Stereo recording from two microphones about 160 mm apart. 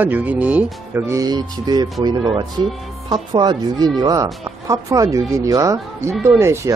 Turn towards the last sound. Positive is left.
turn(degrees=-15)  # may be behind; listen again after turning